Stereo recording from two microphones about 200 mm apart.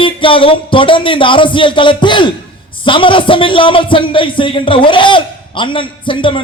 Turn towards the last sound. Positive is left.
turn(degrees=25)  # may be behind; listen again after turning